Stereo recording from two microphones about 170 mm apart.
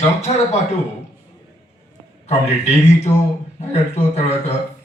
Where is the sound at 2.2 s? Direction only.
40° left (ahead or behind).